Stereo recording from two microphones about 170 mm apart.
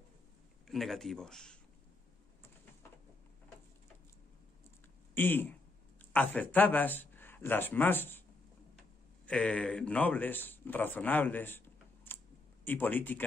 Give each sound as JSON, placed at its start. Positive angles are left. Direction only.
{"t": 0.7, "sound": "speech", "side_deg": 0}
{"t": 5.1, "sound": "speech", "side_deg": 10}
{"t": 9.2, "sound": "a man's voice", "side_deg": 5}